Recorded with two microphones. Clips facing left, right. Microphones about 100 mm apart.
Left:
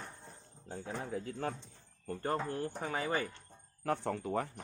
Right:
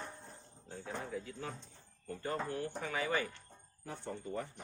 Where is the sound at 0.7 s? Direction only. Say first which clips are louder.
Left 3 dB; 45° left (ahead or behind).